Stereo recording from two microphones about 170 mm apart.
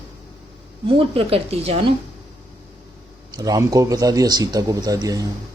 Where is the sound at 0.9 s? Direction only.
35° right (ahead or behind).